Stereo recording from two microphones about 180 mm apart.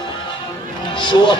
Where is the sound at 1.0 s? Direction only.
25° left (ahead or behind).